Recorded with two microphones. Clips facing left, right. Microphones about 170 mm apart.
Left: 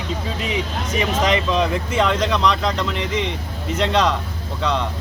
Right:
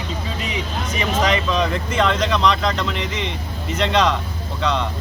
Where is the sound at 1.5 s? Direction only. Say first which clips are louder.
Left 1 dB; 10° left (ahead or behind).